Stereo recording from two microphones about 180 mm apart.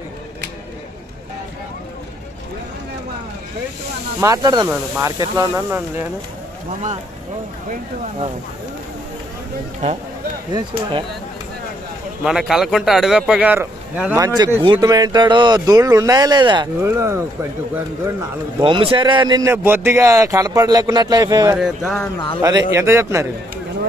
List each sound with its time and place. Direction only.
4.2 s speech: 20° right (ahead or behind)
10.5 s speech: 25° right (ahead or behind)
12.3 s a man's voice: centre (ahead or behind)
14.2 s speech: 25° right (ahead or behind)
16.8 s speech: 15° right (ahead or behind)
18.6 s speech: 30° right (ahead or behind)
21.5 s a man's voice: centre (ahead or behind)
22.4 s speech: 20° right (ahead or behind)